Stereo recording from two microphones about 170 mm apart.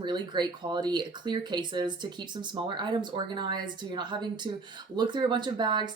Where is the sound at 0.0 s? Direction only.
25° right (ahead or behind).